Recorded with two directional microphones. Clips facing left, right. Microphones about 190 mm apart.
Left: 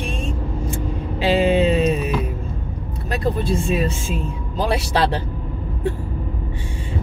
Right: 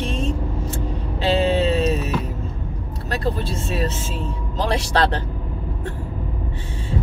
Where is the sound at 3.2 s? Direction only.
15° left (ahead or behind).